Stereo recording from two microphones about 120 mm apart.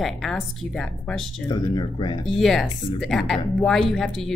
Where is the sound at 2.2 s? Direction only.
Centre (ahead or behind).